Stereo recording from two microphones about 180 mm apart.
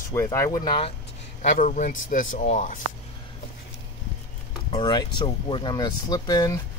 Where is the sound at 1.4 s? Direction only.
45° left (ahead or behind).